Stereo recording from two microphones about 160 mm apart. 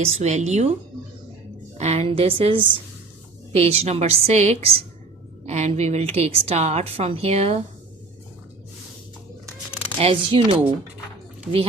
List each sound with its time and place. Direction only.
0.0 s speech: 45° right (ahead or behind)
1.8 s a woman's voice: 40° right (ahead or behind)
10.0 s a woman's voice: 35° right (ahead or behind)